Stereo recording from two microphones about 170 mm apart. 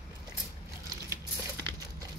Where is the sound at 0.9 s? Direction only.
20° right (ahead or behind).